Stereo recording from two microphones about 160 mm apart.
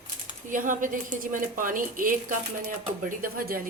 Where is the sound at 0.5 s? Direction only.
55° right (ahead or behind).